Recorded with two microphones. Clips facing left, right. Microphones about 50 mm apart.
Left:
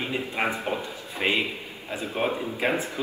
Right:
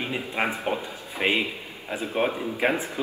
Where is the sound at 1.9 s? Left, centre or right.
Centre.